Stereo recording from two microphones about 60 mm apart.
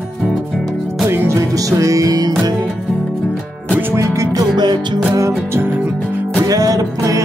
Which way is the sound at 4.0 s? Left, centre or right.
Right.